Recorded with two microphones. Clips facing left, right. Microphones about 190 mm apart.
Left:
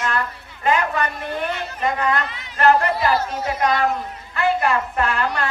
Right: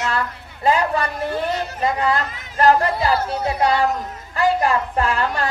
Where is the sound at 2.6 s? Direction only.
35° right (ahead or behind).